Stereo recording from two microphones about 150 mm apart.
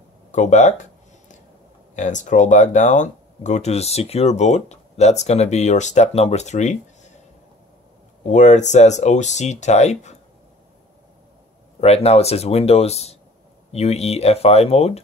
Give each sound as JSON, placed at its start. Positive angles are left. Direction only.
{"t": 0.3, "sound": "speech", "side_deg": 50}
{"t": 2.0, "sound": "speech", "side_deg": 55}
{"t": 8.3, "sound": "speech", "side_deg": 50}
{"t": 11.8, "sound": "speech", "side_deg": 45}